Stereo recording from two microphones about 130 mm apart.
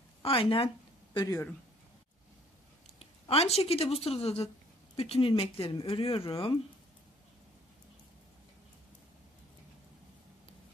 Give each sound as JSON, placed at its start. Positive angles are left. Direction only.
{"t": 0.2, "sound": "speech", "side_deg": 45}
{"t": 1.1, "sound": "speech", "side_deg": 25}
{"t": 3.0, "sound": "speech", "side_deg": 50}